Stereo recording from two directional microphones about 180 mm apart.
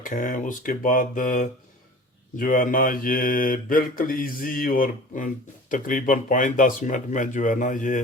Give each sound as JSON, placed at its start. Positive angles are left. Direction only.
{"t": 0.0, "sound": "mantra", "side_deg": 50}